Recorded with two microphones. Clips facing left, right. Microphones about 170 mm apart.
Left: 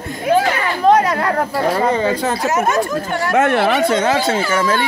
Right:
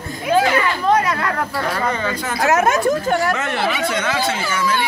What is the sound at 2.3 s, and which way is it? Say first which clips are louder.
Speech: right 1 dB; 60° right (ahead or behind).